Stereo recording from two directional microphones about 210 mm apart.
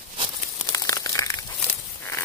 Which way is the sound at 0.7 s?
15° left (ahead or behind).